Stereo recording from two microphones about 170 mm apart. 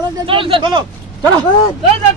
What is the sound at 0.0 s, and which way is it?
Speech, 30° right (ahead or behind).